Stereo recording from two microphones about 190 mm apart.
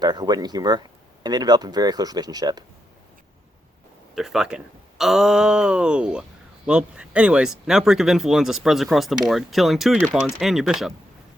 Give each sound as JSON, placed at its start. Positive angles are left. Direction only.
{"t": 0.0, "sound": "speech", "side_deg": -20}
{"t": 4.1, "sound": "speech", "side_deg": 0}